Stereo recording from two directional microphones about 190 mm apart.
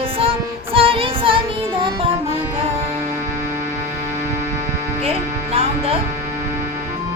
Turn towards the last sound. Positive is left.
turn(degrees=-30)  # may be behind; listen again after turning